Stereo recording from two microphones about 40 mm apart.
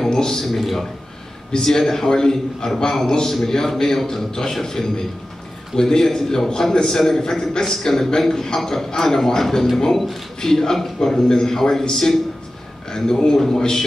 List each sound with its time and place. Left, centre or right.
0.1 s a man's voice: centre
0.6 s a man's voice: centre
1.5 s a man's voice: centre